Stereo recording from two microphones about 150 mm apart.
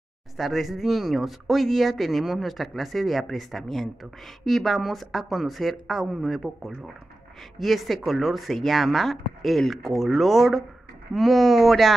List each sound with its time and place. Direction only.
0.4 s speech: centre (ahead or behind)